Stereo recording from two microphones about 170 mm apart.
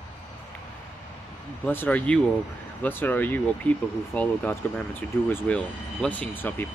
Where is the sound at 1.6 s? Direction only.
10° left (ahead or behind).